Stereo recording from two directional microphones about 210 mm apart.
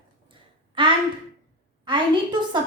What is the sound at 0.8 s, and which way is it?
A woman's voice, 25° right (ahead or behind).